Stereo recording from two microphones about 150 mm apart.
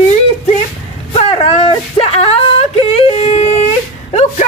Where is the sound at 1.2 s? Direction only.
40° left (ahead or behind).